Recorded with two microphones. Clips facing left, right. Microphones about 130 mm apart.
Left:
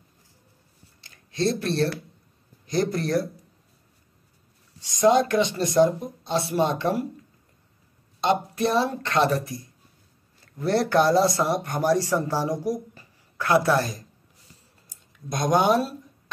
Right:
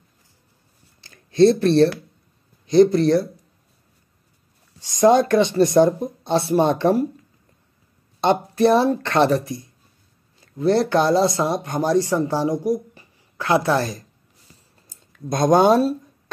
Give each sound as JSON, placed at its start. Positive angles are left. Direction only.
{"t": 1.0, "sound": "a sound", "side_deg": -30}
{"t": 2.6, "sound": "speech", "side_deg": -25}
{"t": 5.0, "sound": "speech", "side_deg": -35}
{"t": 8.2, "sound": "speech", "side_deg": -30}
{"t": 10.6, "sound": "speech", "side_deg": -20}
{"t": 15.2, "sound": "speech", "side_deg": -40}
{"t": 15.5, "sound": "speech", "side_deg": -25}